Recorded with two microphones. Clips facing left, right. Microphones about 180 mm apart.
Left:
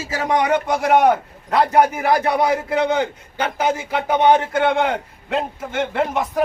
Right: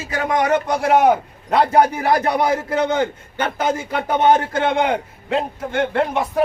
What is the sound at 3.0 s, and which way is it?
A man's voice, 50° right (ahead or behind).